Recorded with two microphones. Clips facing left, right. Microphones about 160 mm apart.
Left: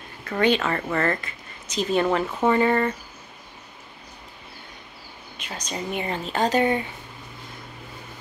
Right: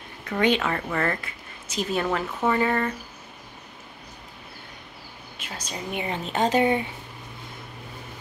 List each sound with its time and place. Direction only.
0.6 s a woman's voice: 5° right (ahead or behind)
2.0 s a woman's voice: 10° left (ahead or behind)
5.4 s a woman's voice: 5° right (ahead or behind)
6.4 s speech: 20° right (ahead or behind)